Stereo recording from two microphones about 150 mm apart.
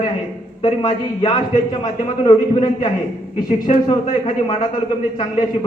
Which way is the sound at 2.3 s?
35° left (ahead or behind).